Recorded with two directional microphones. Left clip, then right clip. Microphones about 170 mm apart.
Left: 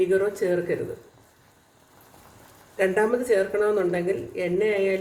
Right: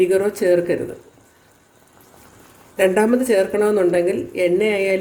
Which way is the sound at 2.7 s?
55° right (ahead or behind).